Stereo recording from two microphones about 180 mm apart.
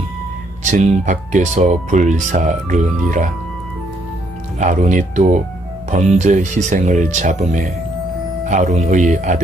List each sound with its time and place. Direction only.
0.6 s speech: 40° right (ahead or behind)
4.6 s speech: 45° right (ahead or behind)